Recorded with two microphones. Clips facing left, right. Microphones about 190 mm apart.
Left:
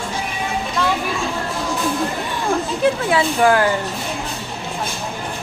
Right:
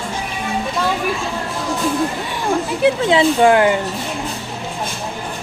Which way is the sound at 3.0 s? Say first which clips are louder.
Right 6 dB; 25° right (ahead or behind).